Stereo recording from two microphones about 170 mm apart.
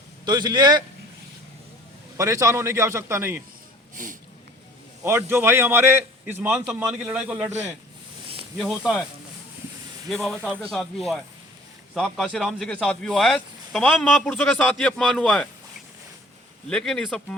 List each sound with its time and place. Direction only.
0.3 s a man's voice: 25° right (ahead or behind)
2.1 s a man's voice: 20° right (ahead or behind)
3.9 s speech: 50° right (ahead or behind)
5.0 s a man's voice: 15° right (ahead or behind)
8.5 s speech: centre (ahead or behind)
10.1 s speech: centre (ahead or behind)
16.6 s speech: 5° left (ahead or behind)